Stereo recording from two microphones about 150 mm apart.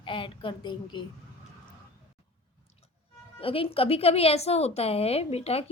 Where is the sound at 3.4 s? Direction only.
40° left (ahead or behind).